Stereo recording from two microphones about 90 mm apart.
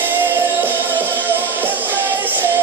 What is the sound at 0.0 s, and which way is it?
Music, 20° right (ahead or behind).